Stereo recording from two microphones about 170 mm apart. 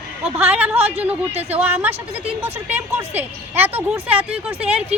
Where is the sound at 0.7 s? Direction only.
35° right (ahead or behind).